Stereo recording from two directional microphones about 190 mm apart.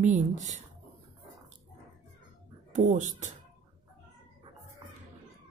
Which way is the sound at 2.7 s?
40° right (ahead or behind).